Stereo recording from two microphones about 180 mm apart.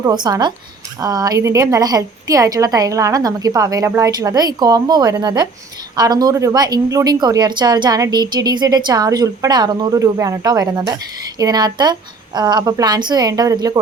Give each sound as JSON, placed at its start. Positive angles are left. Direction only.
{"t": 0.0, "sound": "speech", "side_deg": -25}